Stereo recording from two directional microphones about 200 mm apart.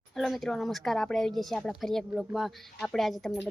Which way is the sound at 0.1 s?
Centre (ahead or behind).